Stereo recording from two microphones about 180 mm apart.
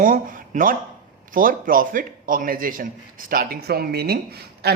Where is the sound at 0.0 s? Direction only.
50° right (ahead or behind).